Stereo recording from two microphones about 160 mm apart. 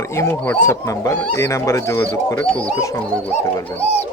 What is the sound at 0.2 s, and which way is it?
A man's voice, 15° left (ahead or behind).